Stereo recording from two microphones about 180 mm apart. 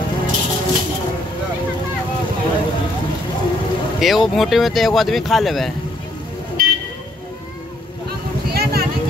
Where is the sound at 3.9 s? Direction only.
Centre (ahead or behind).